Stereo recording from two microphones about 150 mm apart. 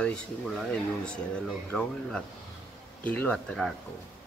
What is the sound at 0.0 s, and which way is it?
Speech, 5° left (ahead or behind).